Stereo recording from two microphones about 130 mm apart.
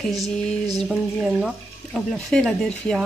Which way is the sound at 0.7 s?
Centre (ahead or behind).